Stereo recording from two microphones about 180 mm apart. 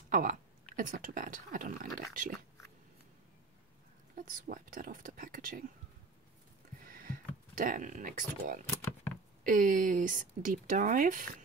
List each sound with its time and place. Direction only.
0.1 s speech: 45° right (ahead or behind)
4.1 s speech: 50° right (ahead or behind)
6.8 s a sound: 50° right (ahead or behind)
9.4 s speech: 50° right (ahead or behind)